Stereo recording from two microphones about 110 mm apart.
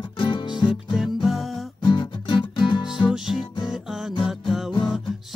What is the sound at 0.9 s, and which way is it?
Music, centre (ahead or behind).